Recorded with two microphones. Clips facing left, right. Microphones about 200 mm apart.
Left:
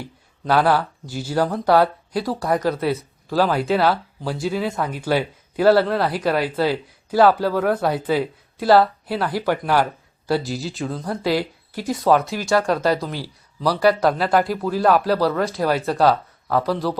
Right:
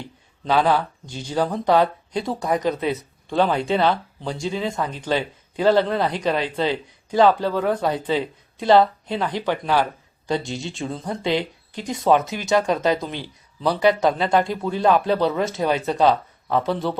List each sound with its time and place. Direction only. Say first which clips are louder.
0.0 s a sound: left 2 dB; 10° left (ahead or behind)
0.8 s speech: left 2 dB; 5° left (ahead or behind)
2.4 s speech: left 1 dB; 20° right (ahead or behind)
3.2 s speech: left 1 dB; 5° left (ahead or behind)
12.1 s speech: even; 20° right (ahead or behind)
13.1 s speech: left 2 dB; 5° left (ahead or behind)
13.7 s speech: left 1 dB; 20° right (ahead or behind)
14.0 s speech: left 1 dB; 5° left (ahead or behind)